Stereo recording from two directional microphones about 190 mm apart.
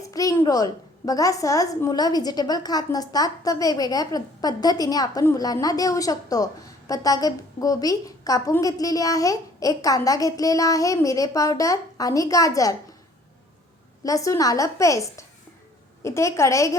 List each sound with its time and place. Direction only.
0.1 s a woman's voice: 20° left (ahead or behind)
14.0 s a woman's voice: 15° left (ahead or behind)